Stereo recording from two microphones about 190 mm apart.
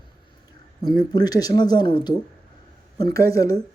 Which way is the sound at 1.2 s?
20° left (ahead or behind).